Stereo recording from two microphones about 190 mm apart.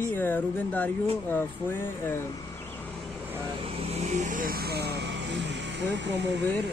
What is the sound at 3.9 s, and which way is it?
Vehicle, 40° right (ahead or behind).